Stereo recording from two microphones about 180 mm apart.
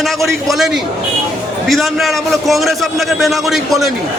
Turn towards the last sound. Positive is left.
turn(degrees=0)  # may be behind; listen again after turning